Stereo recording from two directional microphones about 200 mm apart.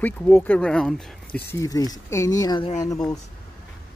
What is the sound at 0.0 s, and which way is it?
Speech, 10° left (ahead or behind).